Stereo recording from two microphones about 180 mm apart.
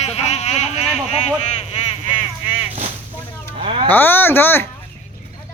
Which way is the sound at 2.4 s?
30° left (ahead or behind).